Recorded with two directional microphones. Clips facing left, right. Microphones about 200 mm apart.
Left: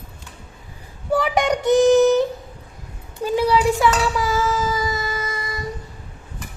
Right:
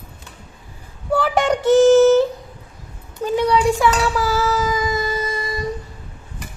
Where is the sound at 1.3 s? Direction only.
15° left (ahead or behind).